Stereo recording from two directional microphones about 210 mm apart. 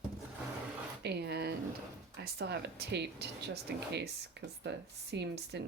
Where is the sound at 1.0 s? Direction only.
50° right (ahead or behind).